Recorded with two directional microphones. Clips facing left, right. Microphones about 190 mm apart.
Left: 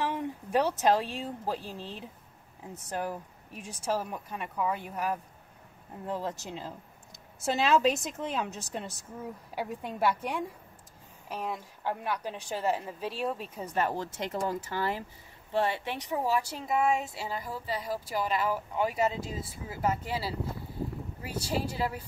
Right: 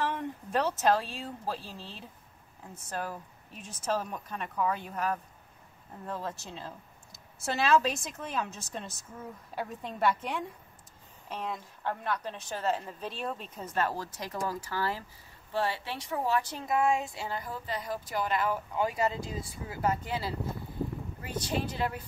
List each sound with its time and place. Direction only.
0.0 s speech: 10° left (ahead or behind)